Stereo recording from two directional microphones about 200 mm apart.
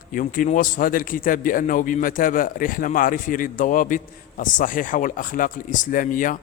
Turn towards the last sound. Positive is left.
turn(degrees=40)  # may be behind; listen again after turning